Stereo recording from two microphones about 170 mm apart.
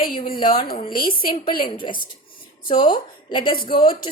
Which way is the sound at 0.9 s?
60° left (ahead or behind).